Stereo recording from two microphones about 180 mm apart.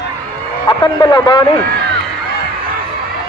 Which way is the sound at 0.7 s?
25° left (ahead or behind).